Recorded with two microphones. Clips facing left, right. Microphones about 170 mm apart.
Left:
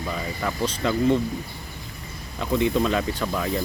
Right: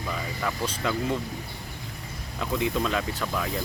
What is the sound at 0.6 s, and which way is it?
Speech, 5° right (ahead or behind).